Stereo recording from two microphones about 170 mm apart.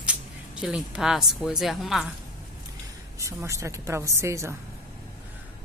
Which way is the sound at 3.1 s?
15° right (ahead or behind).